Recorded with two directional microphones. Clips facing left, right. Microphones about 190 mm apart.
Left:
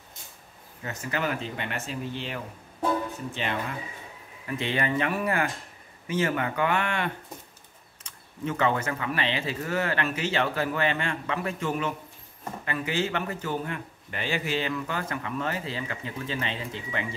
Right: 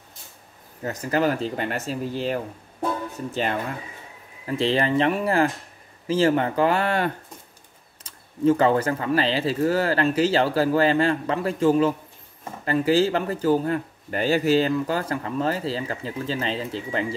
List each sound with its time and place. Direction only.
0.8 s a man's voice: 40° right (ahead or behind)
4.5 s a man's voice: 30° right (ahead or behind)